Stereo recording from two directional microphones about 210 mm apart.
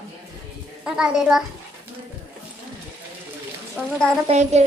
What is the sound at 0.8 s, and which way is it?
Speech, 5° right (ahead or behind).